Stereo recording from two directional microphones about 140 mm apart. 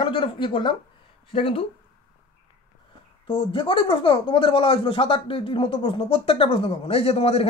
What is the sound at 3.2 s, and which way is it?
Speech, 40° left (ahead or behind).